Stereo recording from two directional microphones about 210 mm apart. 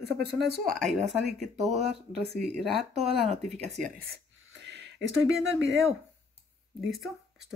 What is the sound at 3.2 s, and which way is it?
Speech, 30° right (ahead or behind).